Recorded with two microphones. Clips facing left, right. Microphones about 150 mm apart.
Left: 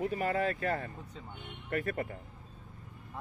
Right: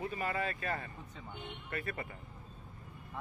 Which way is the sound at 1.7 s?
50° left (ahead or behind).